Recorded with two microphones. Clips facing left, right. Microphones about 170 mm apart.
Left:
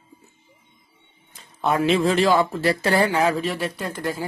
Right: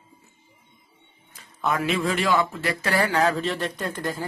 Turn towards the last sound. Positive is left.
turn(degrees=5)  # may be behind; listen again after turning